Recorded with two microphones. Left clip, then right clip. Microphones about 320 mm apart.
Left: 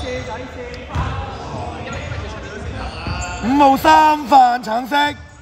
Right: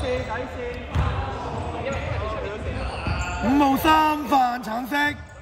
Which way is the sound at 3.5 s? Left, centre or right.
Left.